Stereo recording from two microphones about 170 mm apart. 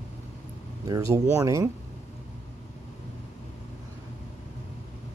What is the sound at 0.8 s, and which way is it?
Speech, 20° right (ahead or behind).